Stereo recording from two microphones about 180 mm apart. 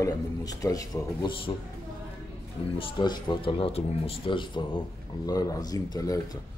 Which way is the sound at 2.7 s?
25° left (ahead or behind).